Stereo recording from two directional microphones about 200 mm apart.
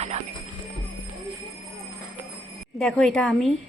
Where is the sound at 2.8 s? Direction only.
Centre (ahead or behind).